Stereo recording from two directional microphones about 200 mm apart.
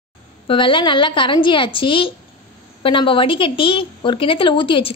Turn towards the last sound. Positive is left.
turn(degrees=25)  # may be behind; listen again after turning